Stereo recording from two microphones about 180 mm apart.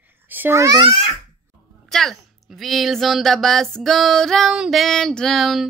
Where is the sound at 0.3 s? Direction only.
15° right (ahead or behind).